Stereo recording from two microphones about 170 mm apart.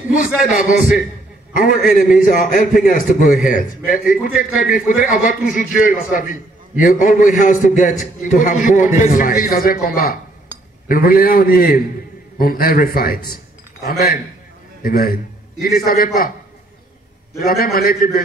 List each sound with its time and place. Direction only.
0.1 s a man's voice: 50° left (ahead or behind)
14.8 s a man's voice: 55° left (ahead or behind)
17.5 s a man's voice: 65° left (ahead or behind)